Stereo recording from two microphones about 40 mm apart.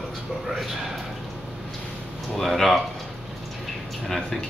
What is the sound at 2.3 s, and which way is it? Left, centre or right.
Speech, centre.